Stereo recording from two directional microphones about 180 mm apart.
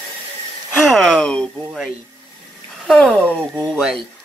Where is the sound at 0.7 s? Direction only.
5° left (ahead or behind).